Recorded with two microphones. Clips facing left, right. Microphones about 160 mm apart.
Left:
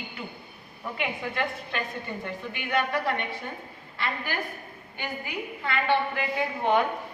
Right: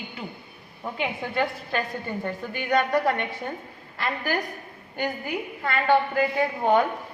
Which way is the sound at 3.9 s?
45° right (ahead or behind).